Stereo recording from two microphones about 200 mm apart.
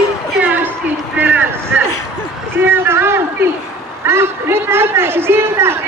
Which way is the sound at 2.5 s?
10° right (ahead or behind).